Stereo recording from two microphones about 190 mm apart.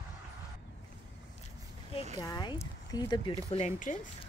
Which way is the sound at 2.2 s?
20° left (ahead or behind).